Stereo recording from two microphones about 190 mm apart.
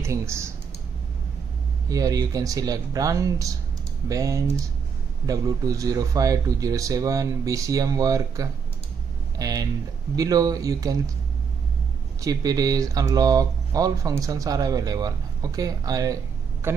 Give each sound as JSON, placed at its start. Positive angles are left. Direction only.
{"t": 0.0, "sound": "speech", "side_deg": -15}
{"t": 1.9, "sound": "speech", "side_deg": -20}
{"t": 12.2, "sound": "speech", "side_deg": -20}